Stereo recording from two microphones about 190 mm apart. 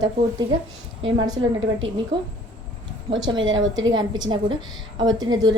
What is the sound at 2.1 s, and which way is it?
Speech, 25° right (ahead or behind).